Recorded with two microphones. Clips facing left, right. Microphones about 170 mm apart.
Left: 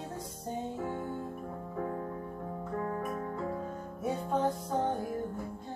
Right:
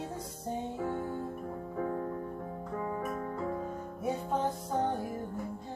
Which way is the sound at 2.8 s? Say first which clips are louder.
Even; 5° right (ahead or behind).